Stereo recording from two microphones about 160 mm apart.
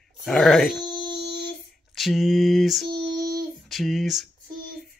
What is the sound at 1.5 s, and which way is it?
Female singing, centre (ahead or behind).